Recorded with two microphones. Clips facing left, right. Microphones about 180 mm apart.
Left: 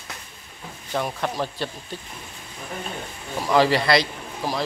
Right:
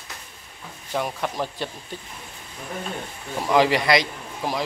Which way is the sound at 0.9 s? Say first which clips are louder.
Left 1 dB; 10° right (ahead or behind).